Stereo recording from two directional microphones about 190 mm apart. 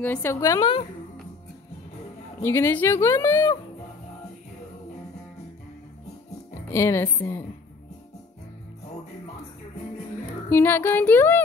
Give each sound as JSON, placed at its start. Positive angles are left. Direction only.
{"t": 0.0, "sound": "speech", "side_deg": 10}
{"t": 2.4, "sound": "speech", "side_deg": 15}
{"t": 6.7, "sound": "speech", "side_deg": 15}
{"t": 10.5, "sound": "speech", "side_deg": 10}